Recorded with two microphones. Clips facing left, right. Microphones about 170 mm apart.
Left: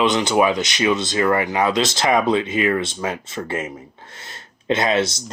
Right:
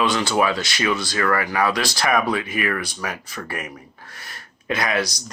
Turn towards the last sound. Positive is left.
turn(degrees=25)  # may be behind; listen again after turning